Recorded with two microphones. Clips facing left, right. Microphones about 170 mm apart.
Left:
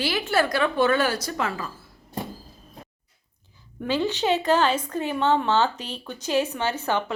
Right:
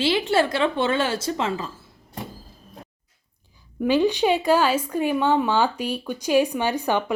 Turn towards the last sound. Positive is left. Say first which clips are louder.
# right 3 dB
turn(degrees=-15)  # may be behind; listen again after turning